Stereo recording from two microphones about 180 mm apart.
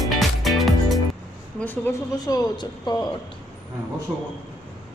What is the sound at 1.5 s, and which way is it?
Speech, 10° left (ahead or behind).